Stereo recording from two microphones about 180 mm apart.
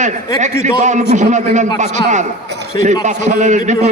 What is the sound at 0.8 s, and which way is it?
A man's voice, 40° right (ahead or behind).